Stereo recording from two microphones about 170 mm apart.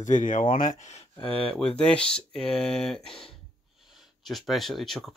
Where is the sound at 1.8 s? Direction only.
5° left (ahead or behind).